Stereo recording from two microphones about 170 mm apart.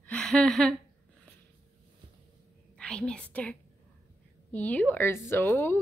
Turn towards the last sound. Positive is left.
turn(degrees=10)  # may be behind; listen again after turning